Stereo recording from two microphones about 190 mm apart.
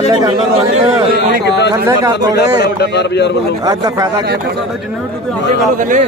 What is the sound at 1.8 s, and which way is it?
Speech, 20° right (ahead or behind).